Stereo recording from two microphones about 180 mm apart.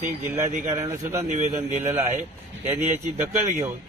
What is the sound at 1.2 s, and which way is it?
Speech, 40° right (ahead or behind).